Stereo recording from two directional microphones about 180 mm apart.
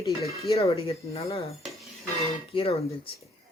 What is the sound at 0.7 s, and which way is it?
Speech, 35° left (ahead or behind).